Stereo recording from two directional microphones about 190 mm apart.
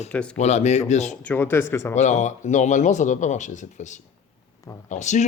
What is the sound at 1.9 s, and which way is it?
Speech, 40° left (ahead or behind).